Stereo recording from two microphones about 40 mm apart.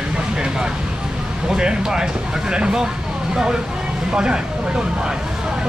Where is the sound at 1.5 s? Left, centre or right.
Centre.